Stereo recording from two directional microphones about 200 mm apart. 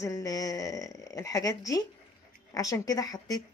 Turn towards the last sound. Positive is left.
turn(degrees=20)  # may be behind; listen again after turning